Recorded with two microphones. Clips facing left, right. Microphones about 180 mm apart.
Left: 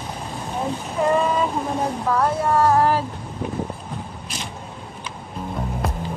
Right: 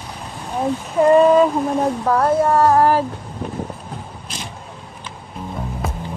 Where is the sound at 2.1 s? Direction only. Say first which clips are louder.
Right 3 dB; 45° right (ahead or behind).